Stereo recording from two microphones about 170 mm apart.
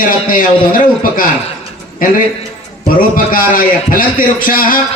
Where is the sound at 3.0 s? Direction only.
55° left (ahead or behind).